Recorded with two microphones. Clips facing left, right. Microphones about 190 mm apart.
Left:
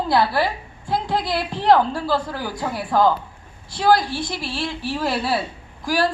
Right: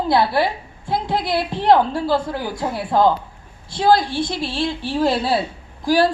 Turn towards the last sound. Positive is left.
turn(degrees=-30)  # may be behind; listen again after turning